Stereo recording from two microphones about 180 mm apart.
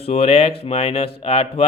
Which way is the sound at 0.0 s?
35° left (ahead or behind).